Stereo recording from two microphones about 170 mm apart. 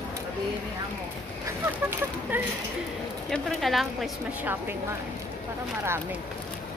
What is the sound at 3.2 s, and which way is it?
Speech, centre (ahead or behind).